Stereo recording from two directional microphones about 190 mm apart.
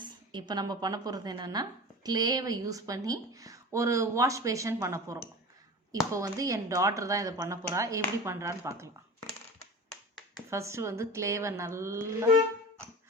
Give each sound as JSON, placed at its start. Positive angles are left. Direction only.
{"t": 0.0, "sound": "speech", "side_deg": -25}
{"t": 10.5, "sound": "speech", "side_deg": -15}